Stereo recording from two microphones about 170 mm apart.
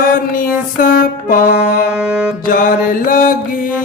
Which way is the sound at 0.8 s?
55° left (ahead or behind).